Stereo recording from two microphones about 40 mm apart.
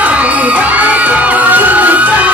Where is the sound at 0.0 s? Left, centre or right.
Right.